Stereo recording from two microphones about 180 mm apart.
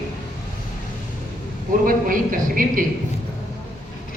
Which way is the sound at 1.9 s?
50° right (ahead or behind).